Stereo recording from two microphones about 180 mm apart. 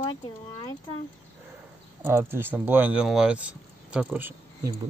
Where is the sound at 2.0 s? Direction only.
10° right (ahead or behind).